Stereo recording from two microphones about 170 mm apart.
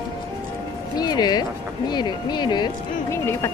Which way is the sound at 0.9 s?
25° left (ahead or behind).